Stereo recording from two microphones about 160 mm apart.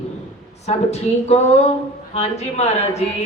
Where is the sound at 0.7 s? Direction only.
40° left (ahead or behind).